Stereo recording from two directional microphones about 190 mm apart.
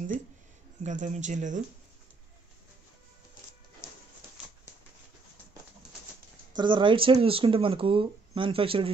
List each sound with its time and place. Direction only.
0.8 s speech: 40° right (ahead or behind)
6.5 s speech: 25° right (ahead or behind)